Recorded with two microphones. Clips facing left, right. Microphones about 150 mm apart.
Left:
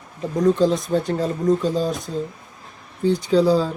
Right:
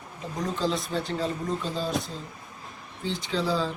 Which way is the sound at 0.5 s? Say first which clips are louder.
Left 9 dB; 50° left (ahead or behind).